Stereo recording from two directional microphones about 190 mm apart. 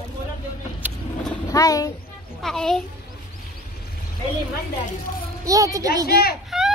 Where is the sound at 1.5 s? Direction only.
20° left (ahead or behind).